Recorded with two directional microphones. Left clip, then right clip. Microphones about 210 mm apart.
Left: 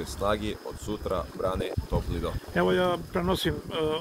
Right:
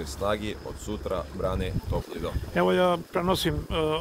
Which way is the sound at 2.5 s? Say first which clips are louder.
Right 2 dB; 15° right (ahead or behind).